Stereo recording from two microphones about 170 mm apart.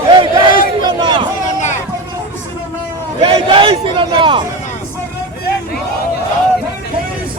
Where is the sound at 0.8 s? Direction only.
30° right (ahead or behind).